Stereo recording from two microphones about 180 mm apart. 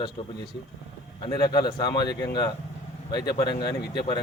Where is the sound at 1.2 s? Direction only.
25° left (ahead or behind).